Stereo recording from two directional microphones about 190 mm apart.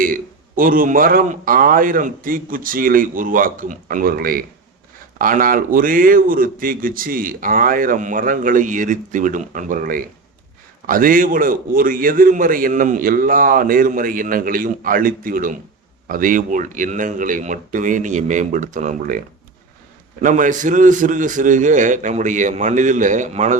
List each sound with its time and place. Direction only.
0.0 s speech: 45° right (ahead or behind)
20.2 s a man's voice: 40° right (ahead or behind)